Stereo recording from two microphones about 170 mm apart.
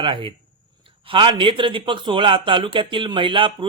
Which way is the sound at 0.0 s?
30° right (ahead or behind).